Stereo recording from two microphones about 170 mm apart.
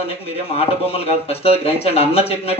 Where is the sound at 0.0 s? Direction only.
35° left (ahead or behind).